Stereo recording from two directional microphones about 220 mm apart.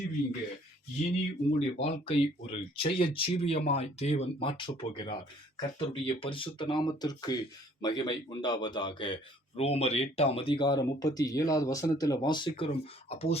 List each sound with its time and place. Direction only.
1.0 s a man's voice: 30° left (ahead or behind)